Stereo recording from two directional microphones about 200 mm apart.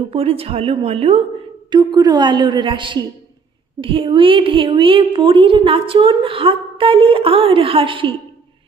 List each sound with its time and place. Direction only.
0.1 s a woman's voice: 30° right (ahead or behind)